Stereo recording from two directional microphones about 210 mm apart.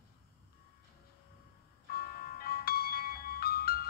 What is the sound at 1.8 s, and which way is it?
Music, 45° left (ahead or behind).